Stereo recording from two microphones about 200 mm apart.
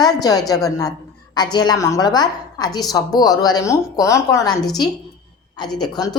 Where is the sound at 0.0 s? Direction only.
20° left (ahead or behind).